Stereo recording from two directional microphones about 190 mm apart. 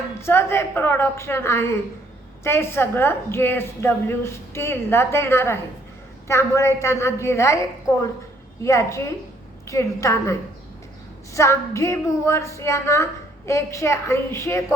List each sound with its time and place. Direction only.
0.2 s a woman's voice: 15° left (ahead or behind)
8.6 s a woman's voice: 15° left (ahead or behind)
11.3 s a woman's voice: 15° left (ahead or behind)